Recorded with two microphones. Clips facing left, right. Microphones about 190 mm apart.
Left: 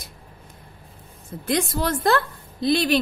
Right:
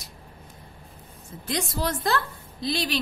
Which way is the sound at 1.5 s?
55° left (ahead or behind).